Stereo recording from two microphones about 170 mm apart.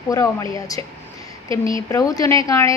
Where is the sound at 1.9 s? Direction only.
20° left (ahead or behind).